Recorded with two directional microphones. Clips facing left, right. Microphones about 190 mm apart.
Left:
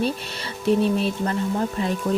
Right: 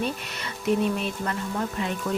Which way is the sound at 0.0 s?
30° left (ahead or behind).